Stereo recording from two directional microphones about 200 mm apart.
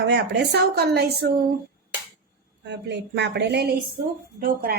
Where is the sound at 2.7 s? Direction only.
60° right (ahead or behind).